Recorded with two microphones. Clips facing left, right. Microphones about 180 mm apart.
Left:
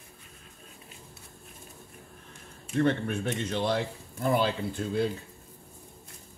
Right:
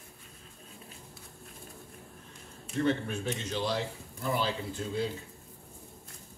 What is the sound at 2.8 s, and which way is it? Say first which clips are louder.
Speech: left 3 dB; 60° left (ahead or behind).